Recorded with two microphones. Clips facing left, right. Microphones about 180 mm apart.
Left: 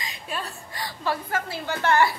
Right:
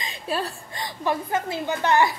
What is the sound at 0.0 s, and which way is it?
A woman's voice, 30° right (ahead or behind).